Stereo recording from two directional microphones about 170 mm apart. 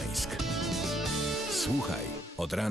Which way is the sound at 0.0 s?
Centre (ahead or behind).